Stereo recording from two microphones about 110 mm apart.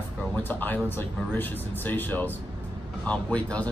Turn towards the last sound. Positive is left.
turn(degrees=10)  # may be behind; listen again after turning